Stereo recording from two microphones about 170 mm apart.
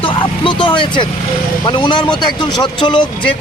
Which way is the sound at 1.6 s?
30° left (ahead or behind).